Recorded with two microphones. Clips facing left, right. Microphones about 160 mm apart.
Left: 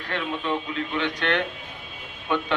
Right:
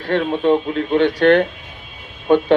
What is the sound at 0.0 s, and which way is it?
A man's voice, 40° right (ahead or behind).